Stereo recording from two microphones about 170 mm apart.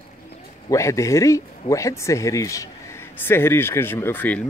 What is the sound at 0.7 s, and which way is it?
Speech, 15° left (ahead or behind).